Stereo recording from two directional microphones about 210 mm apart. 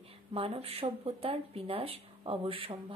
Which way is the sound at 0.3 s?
25° right (ahead or behind).